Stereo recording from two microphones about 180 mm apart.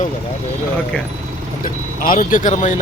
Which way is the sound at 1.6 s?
50° left (ahead or behind).